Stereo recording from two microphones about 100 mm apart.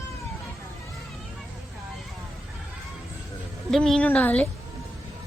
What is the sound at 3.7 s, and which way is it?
Speech, 5° left (ahead or behind).